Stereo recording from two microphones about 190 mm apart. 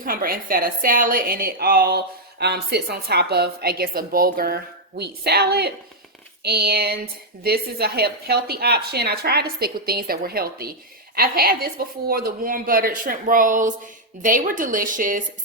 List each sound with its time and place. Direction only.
0.0 s a woman's voice: 50° right (ahead or behind)